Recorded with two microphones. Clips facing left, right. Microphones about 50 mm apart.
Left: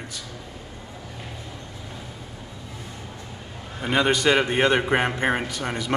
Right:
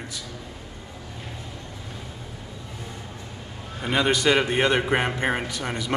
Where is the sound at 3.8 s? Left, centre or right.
Centre.